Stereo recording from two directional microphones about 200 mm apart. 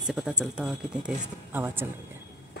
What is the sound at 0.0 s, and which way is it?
Speech, 5° right (ahead or behind).